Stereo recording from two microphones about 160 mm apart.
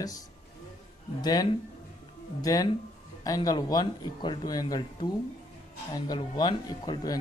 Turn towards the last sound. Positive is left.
turn(degrees=25)  # may be behind; listen again after turning